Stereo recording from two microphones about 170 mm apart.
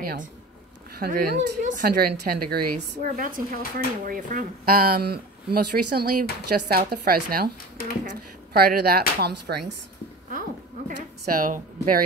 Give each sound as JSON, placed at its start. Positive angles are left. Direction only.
{"t": 0.0, "sound": "a woman's voice", "side_deg": -60}
{"t": 8.5, "sound": "a woman's voice", "side_deg": -65}
{"t": 11.3, "sound": "speech", "side_deg": -50}